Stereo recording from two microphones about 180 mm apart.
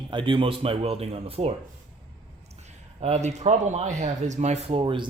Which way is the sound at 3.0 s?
40° right (ahead or behind).